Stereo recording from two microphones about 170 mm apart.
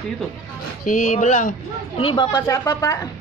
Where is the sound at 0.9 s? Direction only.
50° left (ahead or behind).